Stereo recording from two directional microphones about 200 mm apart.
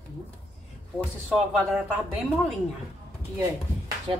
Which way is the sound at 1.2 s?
Centre (ahead or behind).